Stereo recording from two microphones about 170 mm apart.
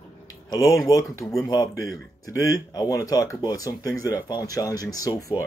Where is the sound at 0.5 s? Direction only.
20° left (ahead or behind).